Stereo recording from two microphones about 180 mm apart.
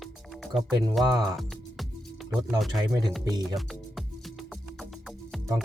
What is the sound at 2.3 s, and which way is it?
Speech, centre (ahead or behind).